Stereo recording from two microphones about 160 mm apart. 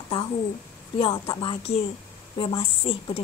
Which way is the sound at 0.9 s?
30° left (ahead or behind).